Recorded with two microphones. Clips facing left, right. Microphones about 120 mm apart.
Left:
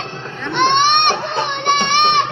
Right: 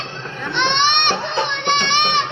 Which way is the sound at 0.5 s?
50° left (ahead or behind).